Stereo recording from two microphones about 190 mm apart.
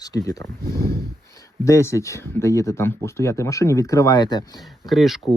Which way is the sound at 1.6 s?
15° left (ahead or behind).